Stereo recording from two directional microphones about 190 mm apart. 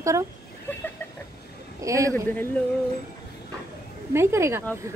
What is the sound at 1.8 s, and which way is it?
Speech, 15° right (ahead or behind).